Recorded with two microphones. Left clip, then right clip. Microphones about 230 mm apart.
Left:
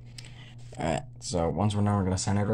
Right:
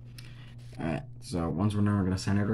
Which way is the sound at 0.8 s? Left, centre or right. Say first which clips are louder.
Left 5 dB; left.